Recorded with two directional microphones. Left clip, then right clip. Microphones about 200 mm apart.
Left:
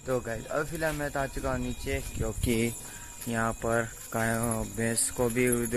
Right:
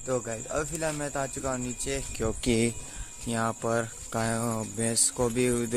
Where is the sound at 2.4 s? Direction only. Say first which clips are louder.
Right 1 dB; 20° right (ahead or behind).